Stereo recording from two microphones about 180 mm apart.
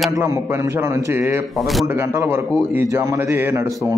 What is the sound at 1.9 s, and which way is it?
Speech, 15° right (ahead or behind).